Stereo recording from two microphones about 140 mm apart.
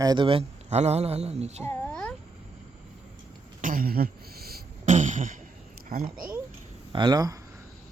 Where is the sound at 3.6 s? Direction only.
80° right; by 5.3 s 65° right (ahead or behind).